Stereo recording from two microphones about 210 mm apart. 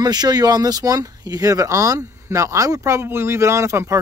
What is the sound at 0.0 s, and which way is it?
Speech, 20° right (ahead or behind).